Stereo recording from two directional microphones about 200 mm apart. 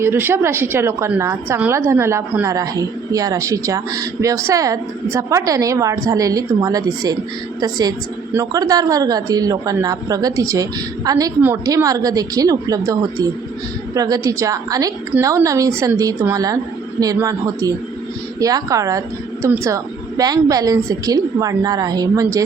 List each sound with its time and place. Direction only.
0.0 s a woman's voice: 10° right (ahead or behind)